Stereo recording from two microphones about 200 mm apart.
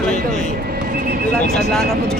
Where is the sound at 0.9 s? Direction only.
45° right (ahead or behind).